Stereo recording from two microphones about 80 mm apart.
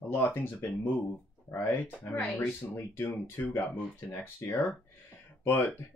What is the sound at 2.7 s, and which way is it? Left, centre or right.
Speech, left.